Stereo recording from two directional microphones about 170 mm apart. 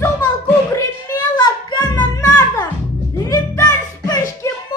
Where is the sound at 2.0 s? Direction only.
20° left (ahead or behind).